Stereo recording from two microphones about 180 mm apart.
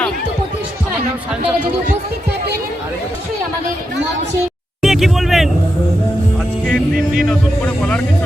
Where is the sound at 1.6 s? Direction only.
65° right (ahead or behind).